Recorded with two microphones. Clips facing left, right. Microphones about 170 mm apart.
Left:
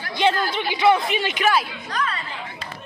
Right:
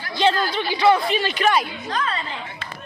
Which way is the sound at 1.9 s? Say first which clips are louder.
Right 1 dB; 25° right (ahead or behind).